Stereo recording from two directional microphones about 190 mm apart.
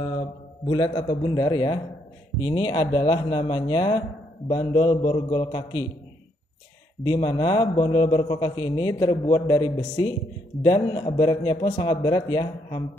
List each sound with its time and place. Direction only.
0.7 s a man's voice: 25° left (ahead or behind)
7.1 s a man's voice: 25° left (ahead or behind)